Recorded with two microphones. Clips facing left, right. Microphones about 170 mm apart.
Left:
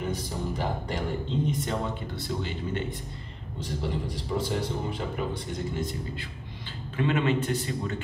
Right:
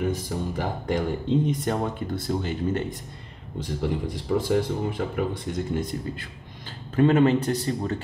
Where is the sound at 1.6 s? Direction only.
50° right (ahead or behind).